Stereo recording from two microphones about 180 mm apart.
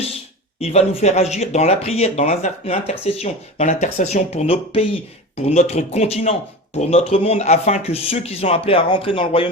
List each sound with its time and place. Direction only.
0.6 s speech: 35° left (ahead or behind)